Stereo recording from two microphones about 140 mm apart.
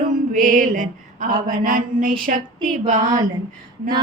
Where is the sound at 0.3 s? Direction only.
65° right (ahead or behind).